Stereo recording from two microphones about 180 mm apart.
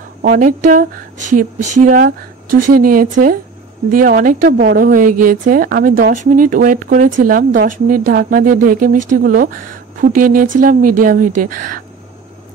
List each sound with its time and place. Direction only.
0.2 s a woman's voice: 50° right (ahead or behind)